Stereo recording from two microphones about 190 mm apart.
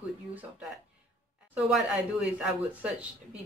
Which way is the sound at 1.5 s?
5° right (ahead or behind).